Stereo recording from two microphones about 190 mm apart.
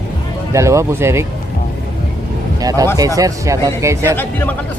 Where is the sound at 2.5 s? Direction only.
20° right (ahead or behind).